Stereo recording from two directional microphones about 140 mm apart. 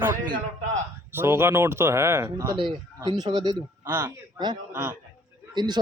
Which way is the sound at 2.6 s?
35° right (ahead or behind).